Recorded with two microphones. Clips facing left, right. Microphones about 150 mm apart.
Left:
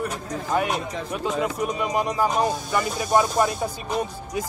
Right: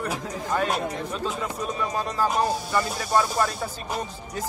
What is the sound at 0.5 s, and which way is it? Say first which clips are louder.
Speech: left 1 dB; 15° left (ahead or behind).